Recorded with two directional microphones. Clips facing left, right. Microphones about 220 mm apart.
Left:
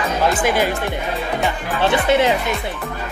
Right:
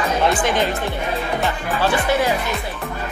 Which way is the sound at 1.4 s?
20° left (ahead or behind).